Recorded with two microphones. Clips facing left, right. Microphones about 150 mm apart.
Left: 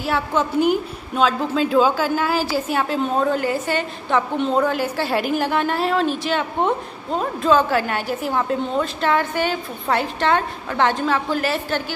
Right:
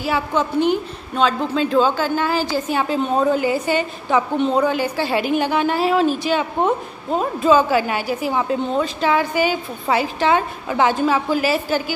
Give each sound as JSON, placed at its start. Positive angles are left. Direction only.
{"t": 0.0, "sound": "a woman's voice", "side_deg": 0}